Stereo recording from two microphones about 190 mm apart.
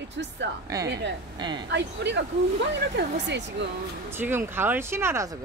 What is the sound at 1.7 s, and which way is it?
Speech, 65° right (ahead or behind).